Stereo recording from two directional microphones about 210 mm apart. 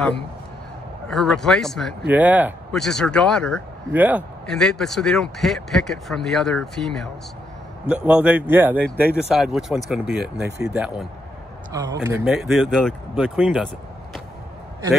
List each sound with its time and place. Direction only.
1.0 s speech: centre (ahead or behind)
3.9 s speech: 10° right (ahead or behind)
4.5 s speech: centre (ahead or behind)
11.7 s speech: 15° right (ahead or behind)
12.3 s speech: centre (ahead or behind)